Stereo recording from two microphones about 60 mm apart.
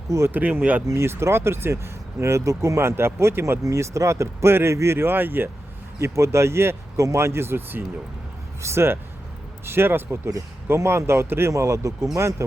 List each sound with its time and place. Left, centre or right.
0.3 s speech: right
0.9 s speech: right
3.6 s speech: right
6.0 s speech: right
6.9 s speech: right
11.5 s speech: right